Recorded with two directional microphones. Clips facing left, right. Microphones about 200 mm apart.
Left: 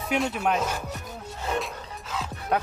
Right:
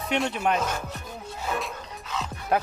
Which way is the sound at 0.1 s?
Centre (ahead or behind).